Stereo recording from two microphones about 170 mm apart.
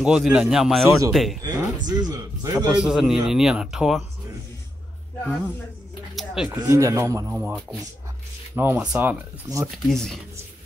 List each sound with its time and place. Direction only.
0.0 s a man's voice: 5° right (ahead or behind)
1.9 s a man's voice: 20° right (ahead or behind)
2.5 s a man's voice: 5° right (ahead or behind)
5.2 s speech: 10° left (ahead or behind)
6.1 s a sound: 5° right (ahead or behind)
6.6 s speech: 20° right (ahead or behind)
9.8 s a man's voice: centre (ahead or behind)